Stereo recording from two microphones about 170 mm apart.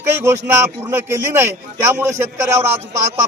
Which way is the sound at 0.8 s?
15° right (ahead or behind).